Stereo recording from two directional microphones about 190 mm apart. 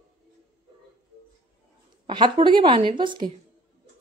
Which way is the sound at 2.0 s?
25° right (ahead or behind).